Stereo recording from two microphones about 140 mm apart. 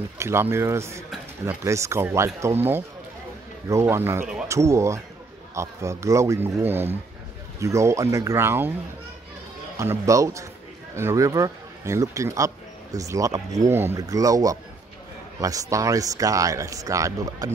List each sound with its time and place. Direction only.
0.2 s speech: 20° right (ahead or behind)
9.8 s speech: 20° right (ahead or behind)